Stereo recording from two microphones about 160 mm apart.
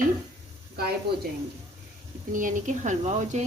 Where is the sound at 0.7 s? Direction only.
80° right.